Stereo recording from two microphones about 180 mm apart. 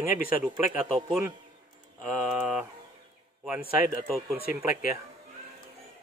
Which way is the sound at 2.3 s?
5° right (ahead or behind).